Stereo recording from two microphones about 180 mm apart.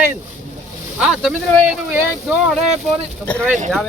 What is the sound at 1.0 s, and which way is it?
Speech, centre (ahead or behind).